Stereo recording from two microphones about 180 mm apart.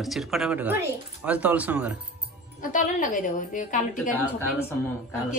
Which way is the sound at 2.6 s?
45° left (ahead or behind).